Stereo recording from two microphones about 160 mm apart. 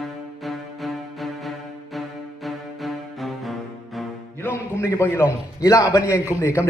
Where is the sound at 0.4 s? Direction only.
Centre (ahead or behind).